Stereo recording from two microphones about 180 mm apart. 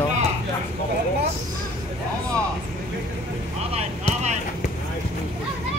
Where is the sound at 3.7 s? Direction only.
40° right (ahead or behind).